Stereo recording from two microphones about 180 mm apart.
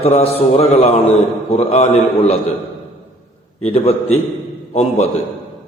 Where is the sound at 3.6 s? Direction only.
35° left (ahead or behind).